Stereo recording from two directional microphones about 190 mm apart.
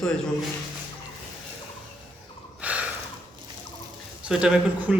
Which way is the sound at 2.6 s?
5° right (ahead or behind).